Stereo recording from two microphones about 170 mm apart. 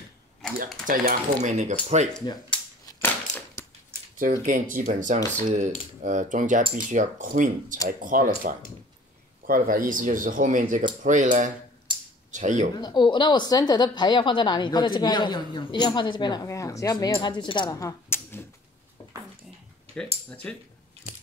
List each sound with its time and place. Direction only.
0.8 s speech: 45° right (ahead or behind)
2.2 s a woman's voice: 25° left (ahead or behind)
2.9 s crushing: 15° left (ahead or behind)
4.2 s speech: 50° right (ahead or behind)
11.9 s a sound: 30° right (ahead or behind)
12.3 s speech: 45° right (ahead or behind)
12.7 s a woman's voice: 25° left (ahead or behind)
20.2 s speech: 5° left (ahead or behind)
21.0 s biting: 35° right (ahead or behind)